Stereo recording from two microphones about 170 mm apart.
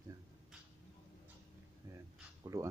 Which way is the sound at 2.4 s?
20° right (ahead or behind).